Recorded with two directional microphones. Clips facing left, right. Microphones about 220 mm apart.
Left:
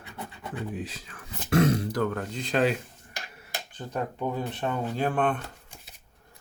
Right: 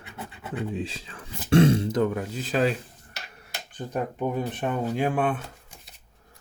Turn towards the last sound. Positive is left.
turn(degrees=-10)  # may be behind; listen again after turning